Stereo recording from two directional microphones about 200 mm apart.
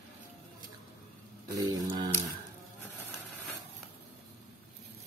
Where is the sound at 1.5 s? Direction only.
20° right (ahead or behind).